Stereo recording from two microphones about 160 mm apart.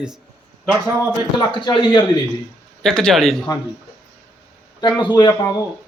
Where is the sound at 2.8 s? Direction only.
5° left (ahead or behind).